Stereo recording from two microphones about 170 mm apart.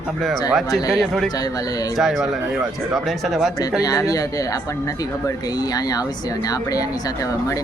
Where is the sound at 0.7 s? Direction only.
20° left (ahead or behind).